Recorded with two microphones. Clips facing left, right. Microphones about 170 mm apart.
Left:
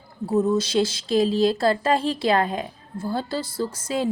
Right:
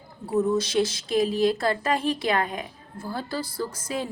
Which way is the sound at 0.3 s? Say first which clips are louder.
Left 2 dB; 30° left (ahead or behind).